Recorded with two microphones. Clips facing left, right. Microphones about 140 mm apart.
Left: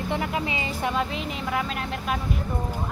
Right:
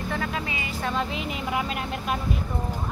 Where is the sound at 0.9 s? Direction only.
Centre (ahead or behind).